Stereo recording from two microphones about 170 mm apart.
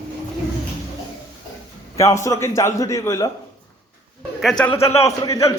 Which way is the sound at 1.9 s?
20° left (ahead or behind).